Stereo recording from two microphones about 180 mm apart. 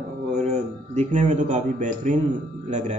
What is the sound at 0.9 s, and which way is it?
Speech, 40° right (ahead or behind).